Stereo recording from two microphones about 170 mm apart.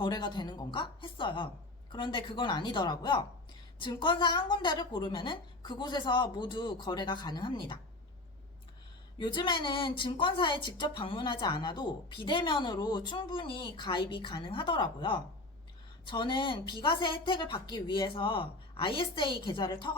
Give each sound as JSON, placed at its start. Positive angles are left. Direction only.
{"t": 0.0, "sound": "a woman's voice", "side_deg": 25}
{"t": 9.1, "sound": "a woman's voice", "side_deg": 30}